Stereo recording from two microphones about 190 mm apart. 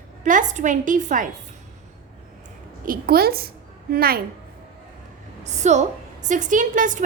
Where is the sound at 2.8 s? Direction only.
50° right (ahead or behind).